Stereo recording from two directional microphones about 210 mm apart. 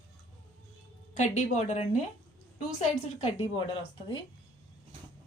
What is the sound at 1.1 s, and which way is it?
A woman's voice, 35° left (ahead or behind).